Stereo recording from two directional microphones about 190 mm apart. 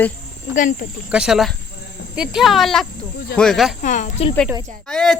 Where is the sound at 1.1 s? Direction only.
5° right (ahead or behind).